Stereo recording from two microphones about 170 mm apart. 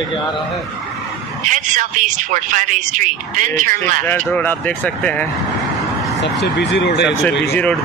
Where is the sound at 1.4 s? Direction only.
50° right (ahead or behind).